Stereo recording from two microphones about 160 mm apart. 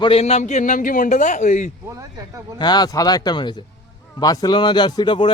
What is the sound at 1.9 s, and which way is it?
Speech, 20° right (ahead or behind).